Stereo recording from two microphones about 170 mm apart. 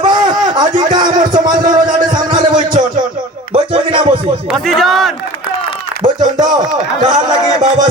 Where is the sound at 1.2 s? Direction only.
50° right (ahead or behind).